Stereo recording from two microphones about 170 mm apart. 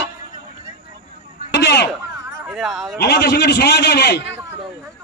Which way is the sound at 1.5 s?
80° left.